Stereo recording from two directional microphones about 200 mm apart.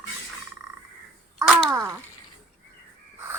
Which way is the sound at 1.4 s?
15° right (ahead or behind).